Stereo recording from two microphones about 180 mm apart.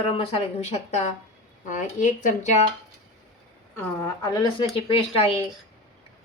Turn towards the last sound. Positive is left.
turn(degrees=30)  # may be behind; listen again after turning